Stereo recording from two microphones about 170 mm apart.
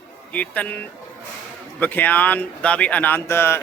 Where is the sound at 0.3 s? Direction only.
10° left (ahead or behind).